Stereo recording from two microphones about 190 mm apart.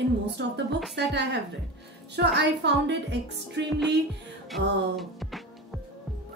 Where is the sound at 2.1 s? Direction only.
65° right (ahead or behind).